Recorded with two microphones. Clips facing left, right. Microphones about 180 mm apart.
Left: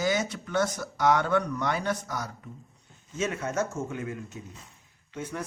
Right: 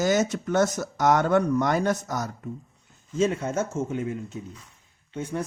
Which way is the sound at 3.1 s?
30° right (ahead or behind).